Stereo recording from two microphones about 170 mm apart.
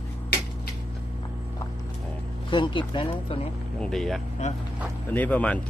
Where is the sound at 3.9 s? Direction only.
Centre (ahead or behind).